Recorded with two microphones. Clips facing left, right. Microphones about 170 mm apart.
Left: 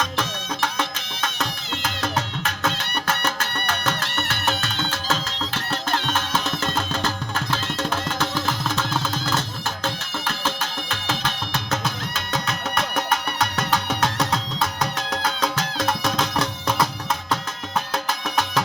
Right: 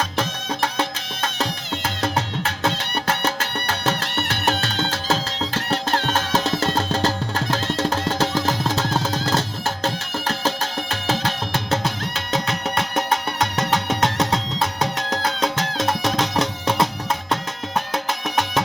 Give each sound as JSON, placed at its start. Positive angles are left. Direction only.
{"t": 0.0, "sound": "music", "side_deg": -30}